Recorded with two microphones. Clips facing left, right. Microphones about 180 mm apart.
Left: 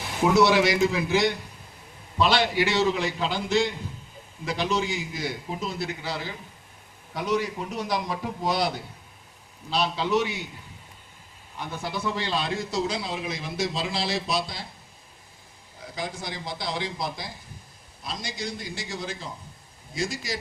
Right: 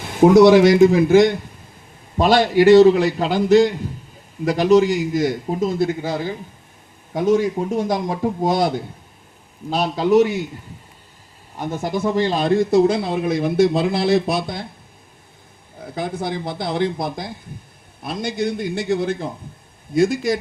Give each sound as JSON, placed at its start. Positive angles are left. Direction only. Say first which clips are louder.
{"t": 0.1, "sound": "a man's voice", "louder": "right 10 dB", "side_deg": -50}
{"t": 11.5, "sound": "a man's voice", "louder": "right 9 dB", "side_deg": -45}
{"t": 15.8, "sound": "a man's voice", "louder": "right 9 dB", "side_deg": -55}